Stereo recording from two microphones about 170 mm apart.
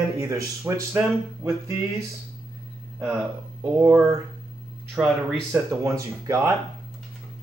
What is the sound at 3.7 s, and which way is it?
Speech, 15° right (ahead or behind).